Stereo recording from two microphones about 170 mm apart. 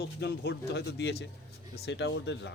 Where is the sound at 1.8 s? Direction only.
90° left.